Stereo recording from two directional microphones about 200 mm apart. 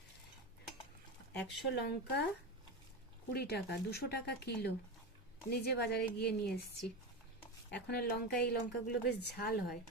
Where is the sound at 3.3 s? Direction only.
55° left (ahead or behind).